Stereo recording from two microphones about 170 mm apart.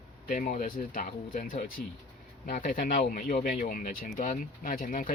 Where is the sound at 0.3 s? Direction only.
55° left (ahead or behind).